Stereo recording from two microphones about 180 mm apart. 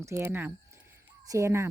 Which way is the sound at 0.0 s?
15° right (ahead or behind).